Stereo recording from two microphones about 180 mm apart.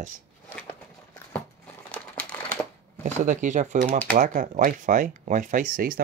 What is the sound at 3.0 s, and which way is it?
Speech, 45° right (ahead or behind).